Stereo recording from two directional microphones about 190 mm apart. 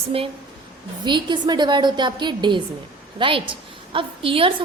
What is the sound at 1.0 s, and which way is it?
A woman's voice, 25° right (ahead or behind).